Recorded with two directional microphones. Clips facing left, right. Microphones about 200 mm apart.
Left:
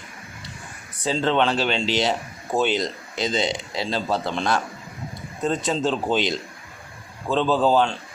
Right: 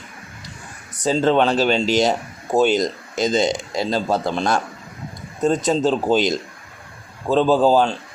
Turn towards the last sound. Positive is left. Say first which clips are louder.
# right 4 dB
turn(degrees=-40)  # may be behind; listen again after turning